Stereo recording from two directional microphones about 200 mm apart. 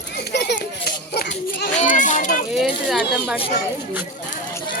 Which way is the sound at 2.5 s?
Centre (ahead or behind).